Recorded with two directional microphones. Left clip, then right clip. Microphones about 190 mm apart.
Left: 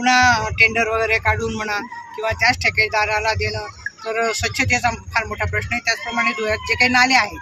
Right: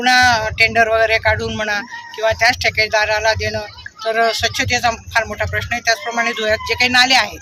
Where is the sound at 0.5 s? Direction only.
55° right (ahead or behind).